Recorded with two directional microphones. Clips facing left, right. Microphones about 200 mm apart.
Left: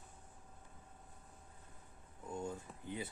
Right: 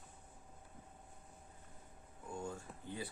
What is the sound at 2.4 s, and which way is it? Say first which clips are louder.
Speech: left 1 dB; 20° left (ahead or behind).